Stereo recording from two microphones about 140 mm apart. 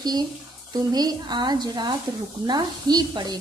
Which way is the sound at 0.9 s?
30° right (ahead or behind).